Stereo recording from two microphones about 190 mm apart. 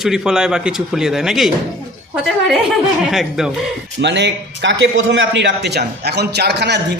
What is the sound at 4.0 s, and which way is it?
A man's voice, 65° right (ahead or behind).